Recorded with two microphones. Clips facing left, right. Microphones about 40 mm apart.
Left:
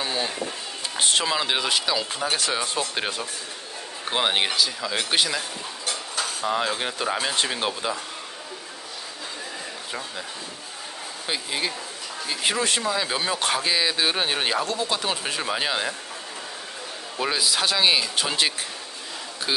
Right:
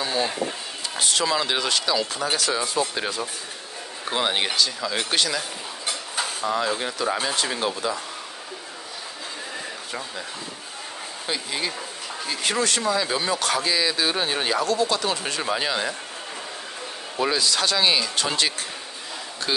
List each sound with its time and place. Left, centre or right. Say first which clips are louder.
0.0 s a sound: right 2 dB; centre
0.9 s speech: left 2 dB; left
1.2 s speech: right 1 dB; centre
2.3 s speech: right 3 dB; left
4.1 s speech: left 1 dB; centre
4.5 s speech: right 1 dB; centre
6.4 s speech: even; centre
11.2 s speech: even; centre
17.3 s speech: even; centre